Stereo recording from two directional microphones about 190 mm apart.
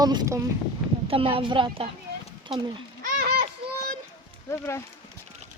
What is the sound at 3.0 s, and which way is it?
Run, 50° right (ahead or behind).